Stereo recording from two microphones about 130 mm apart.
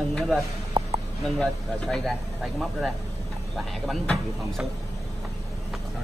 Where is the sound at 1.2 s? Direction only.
Centre (ahead or behind).